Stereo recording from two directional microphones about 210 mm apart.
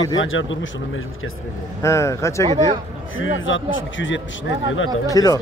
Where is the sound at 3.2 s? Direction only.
65° left (ahead or behind).